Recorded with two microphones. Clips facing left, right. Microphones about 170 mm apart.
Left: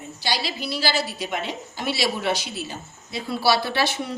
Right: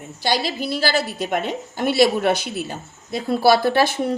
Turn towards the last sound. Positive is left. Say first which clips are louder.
# right 7 dB
turn(degrees=-50)  # may be behind; listen again after turning